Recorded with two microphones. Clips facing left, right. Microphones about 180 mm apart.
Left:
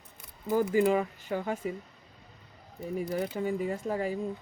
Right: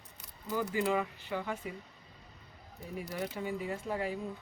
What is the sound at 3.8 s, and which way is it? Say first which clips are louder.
Speech: left 3 dB; 45° left (ahead or behind).